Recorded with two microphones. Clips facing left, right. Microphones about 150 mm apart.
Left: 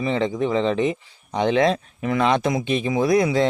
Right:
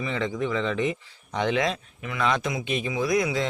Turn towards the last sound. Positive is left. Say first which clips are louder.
# left 6 dB
turn(degrees=35)  # may be behind; listen again after turning